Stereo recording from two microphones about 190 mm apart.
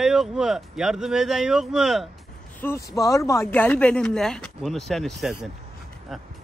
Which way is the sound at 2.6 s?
15° left (ahead or behind).